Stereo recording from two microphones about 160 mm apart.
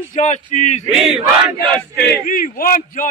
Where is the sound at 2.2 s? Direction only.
60° left (ahead or behind).